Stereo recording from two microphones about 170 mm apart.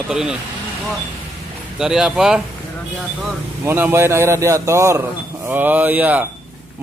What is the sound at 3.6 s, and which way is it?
A man's voice, 15° right (ahead or behind).